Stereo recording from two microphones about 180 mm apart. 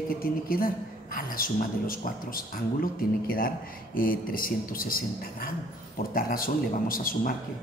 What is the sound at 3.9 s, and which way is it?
A woman's voice, 55° left (ahead or behind).